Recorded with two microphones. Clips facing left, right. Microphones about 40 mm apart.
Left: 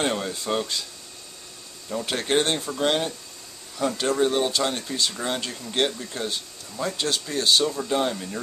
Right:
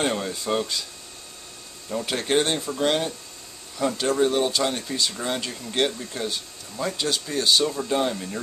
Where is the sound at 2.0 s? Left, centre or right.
Centre.